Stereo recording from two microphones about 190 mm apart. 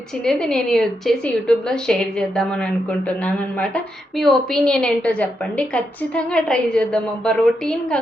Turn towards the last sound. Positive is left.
turn(degrees=5)  # may be behind; listen again after turning